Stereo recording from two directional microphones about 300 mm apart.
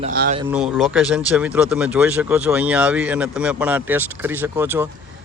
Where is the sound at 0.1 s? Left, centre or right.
Right.